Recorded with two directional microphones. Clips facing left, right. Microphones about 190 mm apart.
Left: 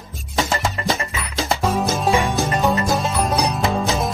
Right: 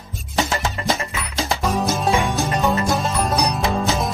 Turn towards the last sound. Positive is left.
turn(degrees=0)  # may be behind; listen again after turning